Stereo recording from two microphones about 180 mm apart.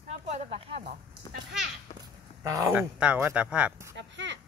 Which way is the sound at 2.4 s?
20° right (ahead or behind).